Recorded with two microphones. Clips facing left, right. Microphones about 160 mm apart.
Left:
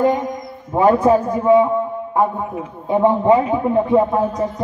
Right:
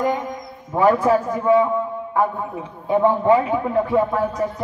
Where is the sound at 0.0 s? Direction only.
25° left (ahead or behind).